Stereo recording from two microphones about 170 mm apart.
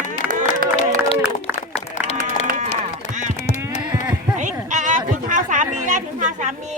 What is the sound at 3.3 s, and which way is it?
Sheep, 40° left (ahead or behind).